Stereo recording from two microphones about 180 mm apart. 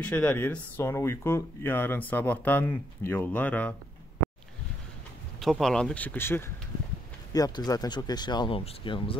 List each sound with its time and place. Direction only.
0.1 s speech: 5° left (ahead or behind)
5.4 s speech: centre (ahead or behind); by 9.1 s 30° left (ahead or behind)